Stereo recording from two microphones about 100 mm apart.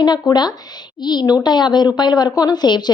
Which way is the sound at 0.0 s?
45° left (ahead or behind).